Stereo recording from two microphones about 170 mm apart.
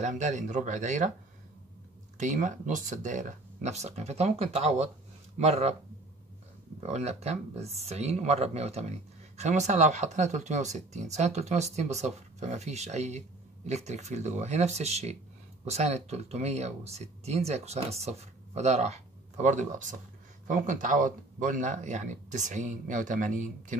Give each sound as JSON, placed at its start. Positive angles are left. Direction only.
{"t": 0.0, "sound": "speech", "side_deg": -45}
{"t": 2.1, "sound": "speech", "side_deg": -45}
{"t": 6.8, "sound": "speech", "side_deg": -40}